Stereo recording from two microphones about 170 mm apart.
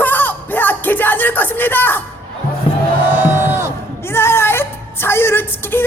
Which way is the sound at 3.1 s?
15° right (ahead or behind).